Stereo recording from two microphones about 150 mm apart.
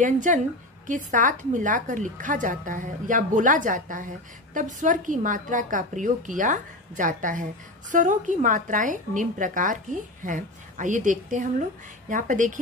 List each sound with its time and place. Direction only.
0.0 s a woman's voice: 60° right (ahead or behind)